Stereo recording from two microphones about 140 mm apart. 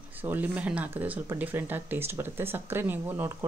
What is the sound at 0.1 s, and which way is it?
Speech, 15° right (ahead or behind).